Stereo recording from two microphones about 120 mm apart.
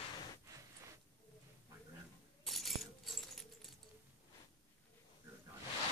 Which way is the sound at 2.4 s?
Centre (ahead or behind).